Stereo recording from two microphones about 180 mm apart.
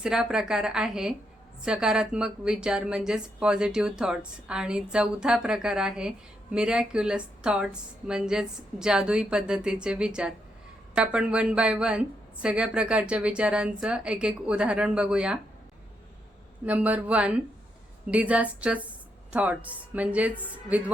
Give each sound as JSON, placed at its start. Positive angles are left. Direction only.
{"t": 0.0, "sound": "a woman's voice", "side_deg": -5}
{"t": 16.6, "sound": "a woman's voice", "side_deg": -10}